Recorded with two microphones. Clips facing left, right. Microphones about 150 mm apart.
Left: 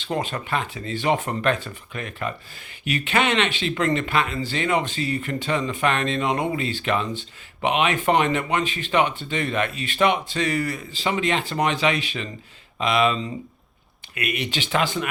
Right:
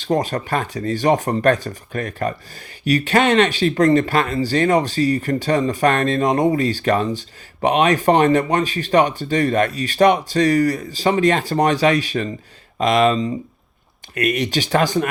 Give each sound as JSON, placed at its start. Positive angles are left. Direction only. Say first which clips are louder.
{"t": 0.0, "sound": "speech", "louder": "right 7 dB", "side_deg": -40}